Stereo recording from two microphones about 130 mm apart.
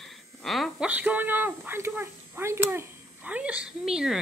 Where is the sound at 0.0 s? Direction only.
Centre (ahead or behind).